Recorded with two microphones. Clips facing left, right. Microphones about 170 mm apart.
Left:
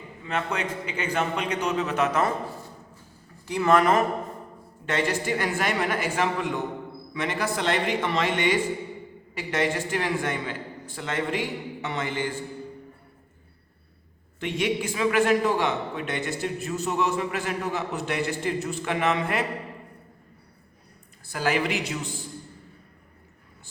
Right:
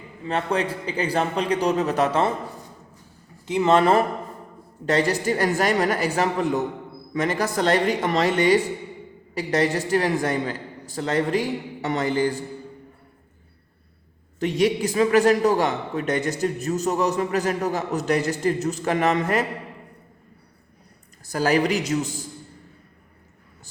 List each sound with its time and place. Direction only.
0.3 s a man's voice: 35° right (ahead or behind)
3.4 s a man's voice: 20° right (ahead or behind); by 12.4 s 40° right (ahead or behind)
14.3 s a man's voice: 40° right (ahead or behind)
21.2 s a man's voice: 40° right (ahead or behind)